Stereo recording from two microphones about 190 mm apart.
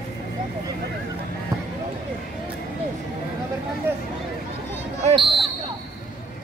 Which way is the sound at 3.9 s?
10° right (ahead or behind).